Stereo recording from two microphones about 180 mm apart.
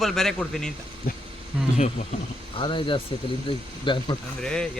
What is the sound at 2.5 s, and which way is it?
Speech, 30° left (ahead or behind).